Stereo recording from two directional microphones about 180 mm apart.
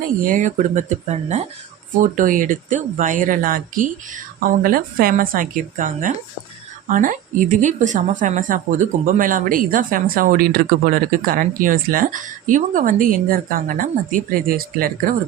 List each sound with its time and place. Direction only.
0.2 s a woman's voice: 50° right (ahead or behind)